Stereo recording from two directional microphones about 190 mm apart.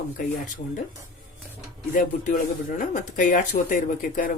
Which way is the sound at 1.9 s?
45° left (ahead or behind).